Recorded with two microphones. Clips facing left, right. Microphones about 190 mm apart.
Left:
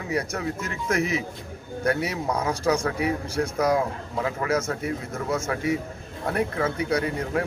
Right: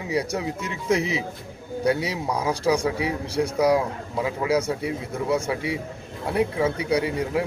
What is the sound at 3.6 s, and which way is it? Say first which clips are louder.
A man's voice: right 3 dB; 10° right (ahead or behind).